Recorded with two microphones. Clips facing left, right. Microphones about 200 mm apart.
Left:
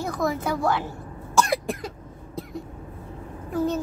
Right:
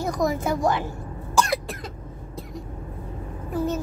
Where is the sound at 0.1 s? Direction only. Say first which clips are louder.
Right 2 dB; 20° right (ahead or behind).